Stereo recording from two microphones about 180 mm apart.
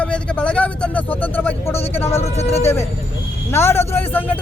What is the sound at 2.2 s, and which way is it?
Speech, 35° left (ahead or behind).